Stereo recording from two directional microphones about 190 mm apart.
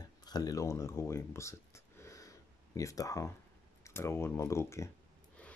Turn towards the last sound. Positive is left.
turn(degrees=5)  # may be behind; listen again after turning